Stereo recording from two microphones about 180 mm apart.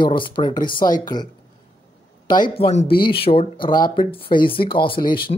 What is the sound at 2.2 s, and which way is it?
Speech, 25° left (ahead or behind).